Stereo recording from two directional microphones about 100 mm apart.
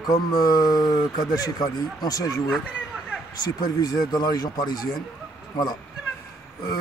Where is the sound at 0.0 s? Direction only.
40° left (ahead or behind).